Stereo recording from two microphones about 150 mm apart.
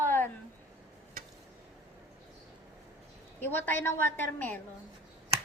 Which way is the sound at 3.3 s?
15° left (ahead or behind).